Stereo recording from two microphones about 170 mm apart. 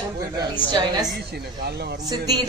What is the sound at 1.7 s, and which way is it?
Speech, 70° right (ahead or behind).